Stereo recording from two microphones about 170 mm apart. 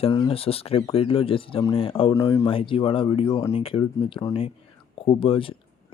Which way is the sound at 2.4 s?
30° left (ahead or behind).